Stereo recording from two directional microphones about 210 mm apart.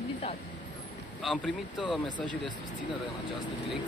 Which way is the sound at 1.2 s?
5° left (ahead or behind).